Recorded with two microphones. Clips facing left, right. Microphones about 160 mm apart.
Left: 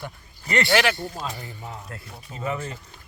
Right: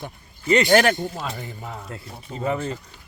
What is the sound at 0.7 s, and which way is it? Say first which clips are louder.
Speech: right 4 dB; 45° right (ahead or behind).